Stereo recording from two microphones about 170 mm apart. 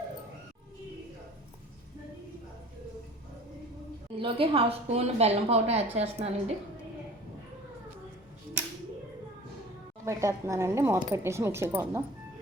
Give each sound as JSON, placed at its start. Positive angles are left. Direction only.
{"t": 4.2, "sound": "a woman's voice", "side_deg": -35}
{"t": 10.1, "sound": "speech", "side_deg": -15}